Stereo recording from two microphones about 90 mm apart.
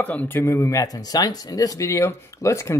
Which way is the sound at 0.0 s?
20° left (ahead or behind).